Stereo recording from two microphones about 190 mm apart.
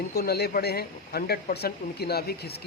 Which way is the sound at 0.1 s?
55° left (ahead or behind).